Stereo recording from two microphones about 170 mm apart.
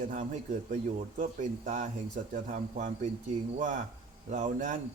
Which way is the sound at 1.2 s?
50° right (ahead or behind).